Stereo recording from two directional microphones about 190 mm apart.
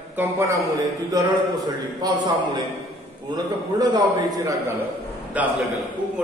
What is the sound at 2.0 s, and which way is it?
A man's voice, 20° right (ahead or behind).